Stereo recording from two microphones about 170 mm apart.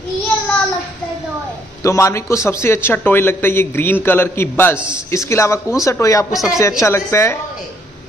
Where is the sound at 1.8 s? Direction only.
15° left (ahead or behind).